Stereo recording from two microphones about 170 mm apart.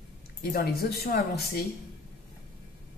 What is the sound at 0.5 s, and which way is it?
A woman's voice, 65° left (ahead or behind).